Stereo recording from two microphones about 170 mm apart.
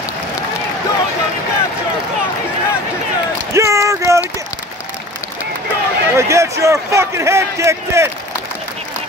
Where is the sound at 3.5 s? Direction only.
15° right (ahead or behind).